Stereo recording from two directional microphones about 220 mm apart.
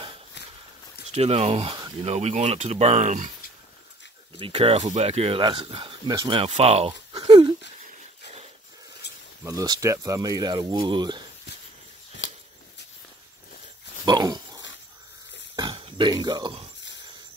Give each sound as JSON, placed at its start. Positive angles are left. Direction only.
{"t": 1.0, "sound": "speech", "side_deg": -30}
{"t": 4.4, "sound": "speech", "side_deg": -25}
{"t": 9.0, "sound": "a sound", "side_deg": 50}
{"t": 9.4, "sound": "speech", "side_deg": -15}
{"t": 12.2, "sound": "a sound", "side_deg": 55}
{"t": 14.0, "sound": "pig", "side_deg": -20}
{"t": 15.5, "sound": "dog", "side_deg": -20}